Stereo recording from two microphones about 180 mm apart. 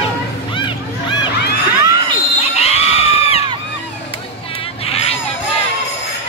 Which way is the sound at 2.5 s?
35° left (ahead or behind).